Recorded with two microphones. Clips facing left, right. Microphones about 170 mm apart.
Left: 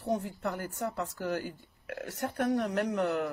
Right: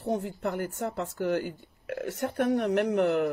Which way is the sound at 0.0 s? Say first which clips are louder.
Right 2 dB; 20° right (ahead or behind).